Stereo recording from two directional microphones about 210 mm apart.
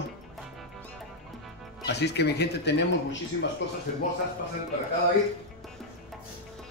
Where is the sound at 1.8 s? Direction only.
55° left (ahead or behind).